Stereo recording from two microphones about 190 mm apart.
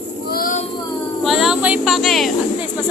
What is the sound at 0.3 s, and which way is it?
Child singing, 50° left (ahead or behind).